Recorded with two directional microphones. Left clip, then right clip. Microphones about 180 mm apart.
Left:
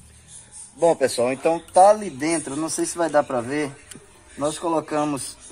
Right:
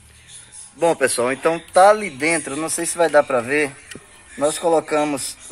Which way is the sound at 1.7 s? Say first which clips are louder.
Right 2 dB; 30° right (ahead or behind).